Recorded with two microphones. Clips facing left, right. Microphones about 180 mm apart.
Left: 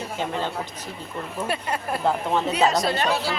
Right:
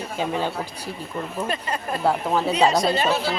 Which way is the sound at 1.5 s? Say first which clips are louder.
Even; 10° left (ahead or behind).